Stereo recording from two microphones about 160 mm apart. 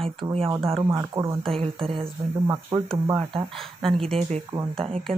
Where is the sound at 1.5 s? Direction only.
35° right (ahead or behind).